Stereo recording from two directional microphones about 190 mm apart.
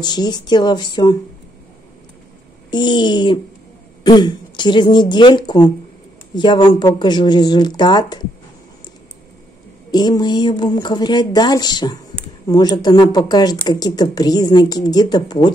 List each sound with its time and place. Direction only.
0.0 s speech: 20° left (ahead or behind)
2.7 s speech: 25° left (ahead or behind)
9.8 s speech: 20° left (ahead or behind)